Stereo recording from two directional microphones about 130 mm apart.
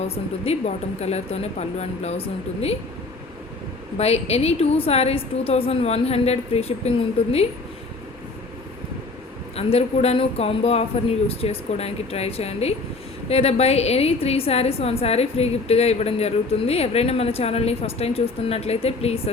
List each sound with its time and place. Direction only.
0.1 s speech: 55° left (ahead or behind)
3.9 s a woman's voice: 55° left (ahead or behind)
9.6 s a woman's voice: 50° left (ahead or behind)